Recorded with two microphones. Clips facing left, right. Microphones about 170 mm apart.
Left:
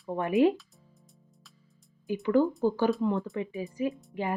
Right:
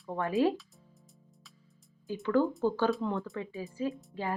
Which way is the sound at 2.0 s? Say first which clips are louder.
Left 3 dB; 15° left (ahead or behind).